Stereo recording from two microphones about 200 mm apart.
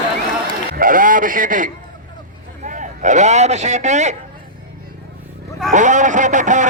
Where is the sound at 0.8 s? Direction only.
45° right (ahead or behind).